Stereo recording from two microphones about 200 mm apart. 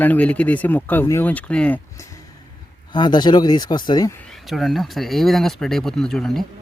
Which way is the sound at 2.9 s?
20° left (ahead or behind).